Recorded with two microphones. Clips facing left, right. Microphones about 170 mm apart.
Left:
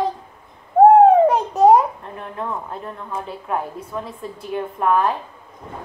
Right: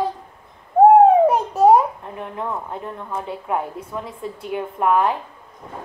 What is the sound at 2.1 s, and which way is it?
A woman's voice, 15° right (ahead or behind).